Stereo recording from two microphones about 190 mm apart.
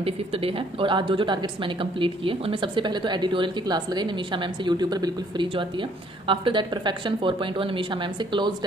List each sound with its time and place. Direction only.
0.0 s speech: 30° right (ahead or behind)